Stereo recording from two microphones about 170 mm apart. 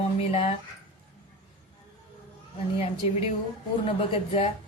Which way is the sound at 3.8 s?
35° left (ahead or behind).